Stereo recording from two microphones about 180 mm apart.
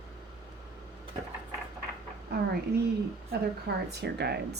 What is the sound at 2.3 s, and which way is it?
Speech, 65° right (ahead or behind).